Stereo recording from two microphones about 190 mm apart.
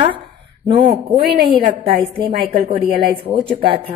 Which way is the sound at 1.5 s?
30° right (ahead or behind).